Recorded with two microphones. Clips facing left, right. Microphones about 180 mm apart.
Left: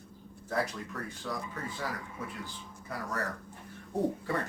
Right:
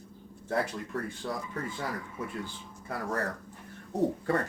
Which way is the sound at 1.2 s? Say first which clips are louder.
Even; 35° right (ahead or behind).